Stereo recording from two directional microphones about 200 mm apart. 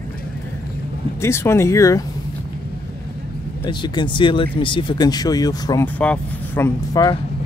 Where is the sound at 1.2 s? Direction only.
15° left (ahead or behind).